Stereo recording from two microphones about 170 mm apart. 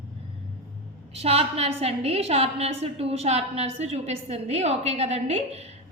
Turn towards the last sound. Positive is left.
turn(degrees=-40)  # may be behind; listen again after turning